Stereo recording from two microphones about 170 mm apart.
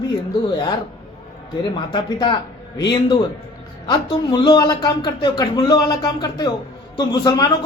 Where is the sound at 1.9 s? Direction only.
25° left (ahead or behind).